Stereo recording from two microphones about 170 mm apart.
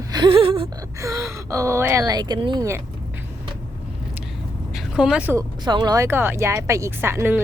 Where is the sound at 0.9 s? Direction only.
20° right (ahead or behind).